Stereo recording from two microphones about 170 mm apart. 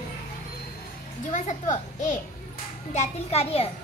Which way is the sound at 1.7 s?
50° left (ahead or behind).